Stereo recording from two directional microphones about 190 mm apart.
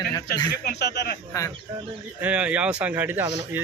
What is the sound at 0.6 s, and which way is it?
Speech, 60° left (ahead or behind).